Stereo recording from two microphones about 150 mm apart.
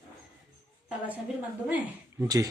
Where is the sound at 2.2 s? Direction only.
25° right (ahead or behind).